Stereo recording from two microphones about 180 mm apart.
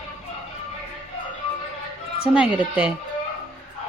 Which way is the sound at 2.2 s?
5° right (ahead or behind).